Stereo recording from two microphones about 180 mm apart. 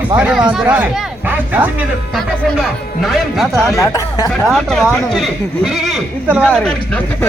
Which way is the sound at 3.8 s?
20° left (ahead or behind).